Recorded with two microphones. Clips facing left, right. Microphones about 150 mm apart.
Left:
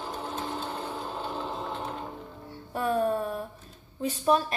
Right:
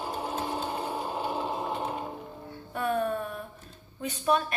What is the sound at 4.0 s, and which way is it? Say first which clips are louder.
Speech: left 2 dB; 35° left (ahead or behind).